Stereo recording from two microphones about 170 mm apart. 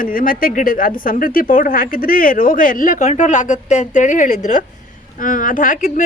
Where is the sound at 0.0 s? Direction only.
55° left (ahead or behind).